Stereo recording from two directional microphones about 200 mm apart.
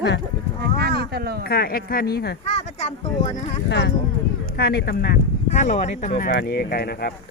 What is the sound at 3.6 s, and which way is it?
Speech, 60° left (ahead or behind).